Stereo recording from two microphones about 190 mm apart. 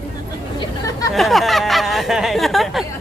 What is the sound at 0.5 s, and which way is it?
Chatter, 20° left (ahead or behind).